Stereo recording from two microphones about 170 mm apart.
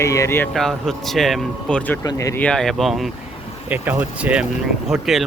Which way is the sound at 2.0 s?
20° left (ahead or behind).